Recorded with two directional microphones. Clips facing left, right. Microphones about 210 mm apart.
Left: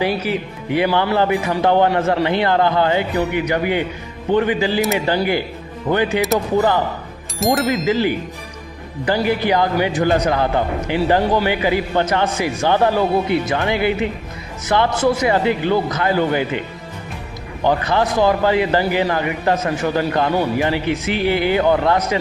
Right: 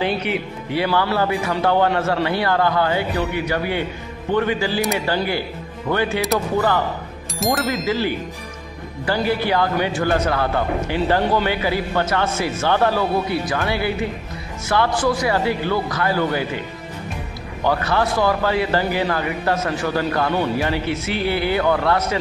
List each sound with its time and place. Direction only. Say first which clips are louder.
0.0 s speech: left 2 dB; 5° left (ahead or behind)
0.7 s a man's voice: left 3 dB; 15° left (ahead or behind)
7.3 s speech: left 3 dB; centre (ahead or behind)
7.8 s a man's voice: left 4 dB; 20° left (ahead or behind)
17.6 s a man's voice: left 2 dB; 20° left (ahead or behind)